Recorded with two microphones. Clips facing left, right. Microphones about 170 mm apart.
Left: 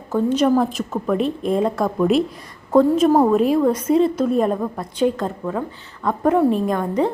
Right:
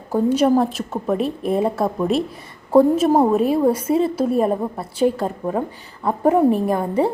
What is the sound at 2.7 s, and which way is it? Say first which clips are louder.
A woman's voice: even; 10° right (ahead or behind).